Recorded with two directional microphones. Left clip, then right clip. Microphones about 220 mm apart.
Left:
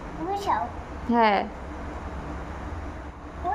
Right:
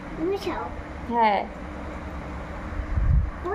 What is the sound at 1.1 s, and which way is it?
Speech, 20° left (ahead or behind).